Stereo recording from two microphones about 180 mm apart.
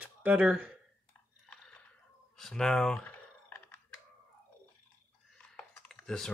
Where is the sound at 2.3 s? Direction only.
Centre (ahead or behind).